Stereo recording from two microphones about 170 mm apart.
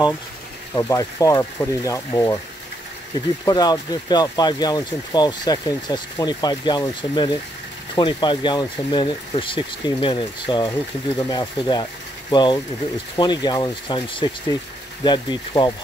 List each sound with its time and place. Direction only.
0.7 s speech: 20° left (ahead or behind)
3.4 s speech: 20° left (ahead or behind)